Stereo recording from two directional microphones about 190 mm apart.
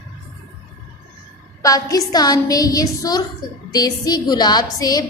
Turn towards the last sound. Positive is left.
turn(degrees=20)  # may be behind; listen again after turning